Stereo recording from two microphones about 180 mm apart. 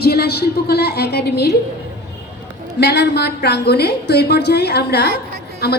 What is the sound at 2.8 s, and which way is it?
A woman's voice, 65° left (ahead or behind).